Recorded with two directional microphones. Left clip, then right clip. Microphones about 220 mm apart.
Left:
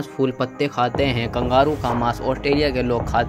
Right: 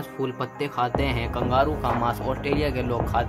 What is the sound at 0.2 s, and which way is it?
Speech, 20° left (ahead or behind).